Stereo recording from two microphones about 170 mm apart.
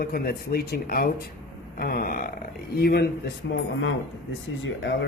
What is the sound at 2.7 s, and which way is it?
Speech, 70° left (ahead or behind).